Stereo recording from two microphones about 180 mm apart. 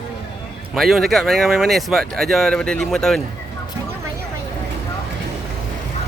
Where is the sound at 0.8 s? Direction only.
Centre (ahead or behind).